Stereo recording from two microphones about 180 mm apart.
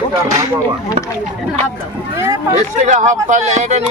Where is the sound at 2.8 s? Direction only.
40° right (ahead or behind).